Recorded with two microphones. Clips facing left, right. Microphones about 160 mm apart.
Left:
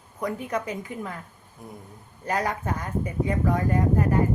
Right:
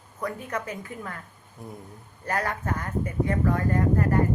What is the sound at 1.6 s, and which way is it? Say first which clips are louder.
Speech: right 2 dB; centre (ahead or behind).